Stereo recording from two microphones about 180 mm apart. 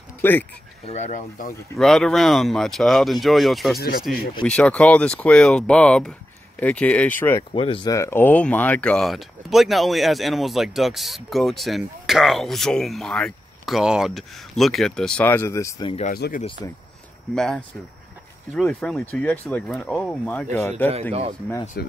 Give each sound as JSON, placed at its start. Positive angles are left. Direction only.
{"t": 0.2, "sound": "speech", "side_deg": 10}
{"t": 0.8, "sound": "speech", "side_deg": 40}
{"t": 1.8, "sound": "speech", "side_deg": 0}
{"t": 7.5, "sound": "speech", "side_deg": 30}
{"t": 7.9, "sound": "speech", "side_deg": 15}
{"t": 16.1, "sound": "speech", "side_deg": 50}
{"t": 16.4, "sound": "speech", "side_deg": 25}
{"t": 17.4, "sound": "speech", "side_deg": 0}
{"t": 21.8, "sound": "speech", "side_deg": 65}